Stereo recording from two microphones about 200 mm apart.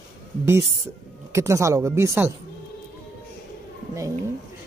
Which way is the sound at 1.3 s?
15° right (ahead or behind).